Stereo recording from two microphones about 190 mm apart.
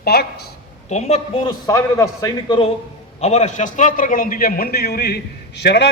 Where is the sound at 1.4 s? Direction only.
20° left (ahead or behind).